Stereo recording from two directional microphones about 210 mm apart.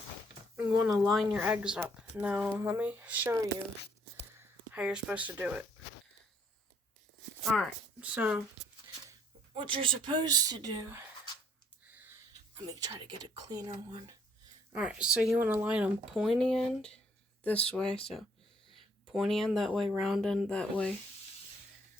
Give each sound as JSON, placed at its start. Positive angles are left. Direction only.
{"t": 0.5, "sound": "speech", "side_deg": -15}
{"t": 1.0, "sound": "speech", "side_deg": 0}
{"t": 7.4, "sound": "speech", "side_deg": 0}
{"t": 9.6, "sound": "speech", "side_deg": -20}
{"t": 12.5, "sound": "speech", "side_deg": -20}
{"t": 14.7, "sound": "speech", "side_deg": -5}